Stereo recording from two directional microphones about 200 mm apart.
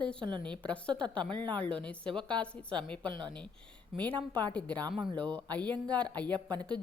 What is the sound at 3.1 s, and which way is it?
Speech, 25° right (ahead or behind).